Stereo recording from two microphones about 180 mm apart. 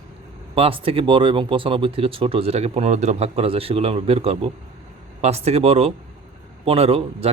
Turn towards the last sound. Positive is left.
turn(degrees=-30)  # may be behind; listen again after turning